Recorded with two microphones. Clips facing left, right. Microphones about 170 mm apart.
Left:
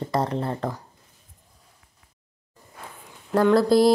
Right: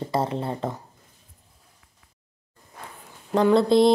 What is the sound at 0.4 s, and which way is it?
Speech, 5° right (ahead or behind).